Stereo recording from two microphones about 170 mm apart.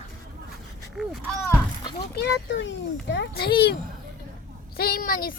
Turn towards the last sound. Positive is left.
turn(degrees=60)  # may be behind; listen again after turning